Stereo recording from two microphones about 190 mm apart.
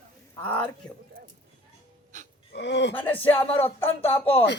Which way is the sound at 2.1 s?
40° right (ahead or behind).